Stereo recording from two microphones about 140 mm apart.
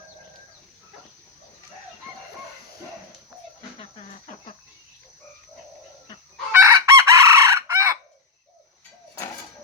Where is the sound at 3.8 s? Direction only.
50° left (ahead or behind).